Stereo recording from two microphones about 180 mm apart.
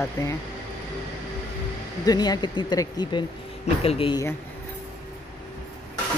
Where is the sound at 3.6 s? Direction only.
35° left (ahead or behind).